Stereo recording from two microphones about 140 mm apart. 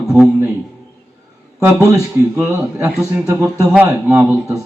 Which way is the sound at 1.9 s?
20° right (ahead or behind).